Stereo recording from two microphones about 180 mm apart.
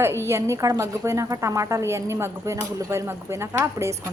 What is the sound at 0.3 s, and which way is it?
A woman's voice, 15° right (ahead or behind).